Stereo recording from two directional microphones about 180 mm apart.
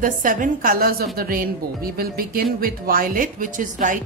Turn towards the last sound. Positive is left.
turn(degrees=-45)  # may be behind; listen again after turning